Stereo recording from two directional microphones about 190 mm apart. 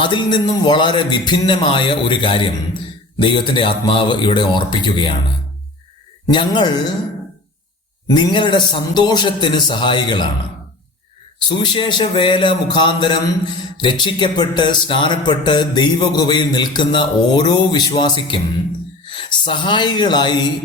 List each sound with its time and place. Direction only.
0.0 s speech: 25° left (ahead or behind)
6.2 s speech: 25° left (ahead or behind)
8.0 s speech: 25° left (ahead or behind)
11.5 s speech: 25° left (ahead or behind)